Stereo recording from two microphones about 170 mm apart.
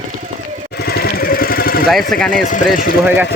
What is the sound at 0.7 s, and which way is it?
Vehicle, 65° left (ahead or behind).